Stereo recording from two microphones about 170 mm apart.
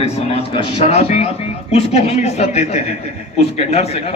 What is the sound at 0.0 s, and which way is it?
A man's voice, 35° left (ahead or behind).